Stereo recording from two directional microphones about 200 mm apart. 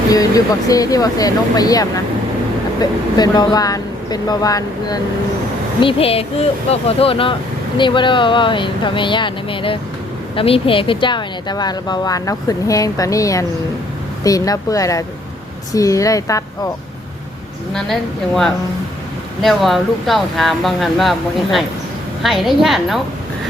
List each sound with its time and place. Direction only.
0.1 s speech: 15° left (ahead or behind)
3.2 s speech: 20° left (ahead or behind)
17.7 s speech: centre (ahead or behind)